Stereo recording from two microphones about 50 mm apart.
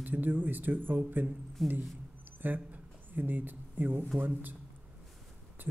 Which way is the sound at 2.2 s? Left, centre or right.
Right.